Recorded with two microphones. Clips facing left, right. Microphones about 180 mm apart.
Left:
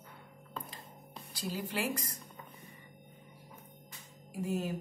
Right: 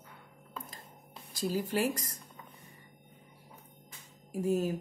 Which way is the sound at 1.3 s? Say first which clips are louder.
Right 6 dB; 45° right (ahead or behind).